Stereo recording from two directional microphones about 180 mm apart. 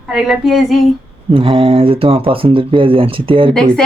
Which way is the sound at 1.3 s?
30° right (ahead or behind).